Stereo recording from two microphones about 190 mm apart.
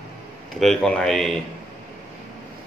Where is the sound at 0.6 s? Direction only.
5° left (ahead or behind).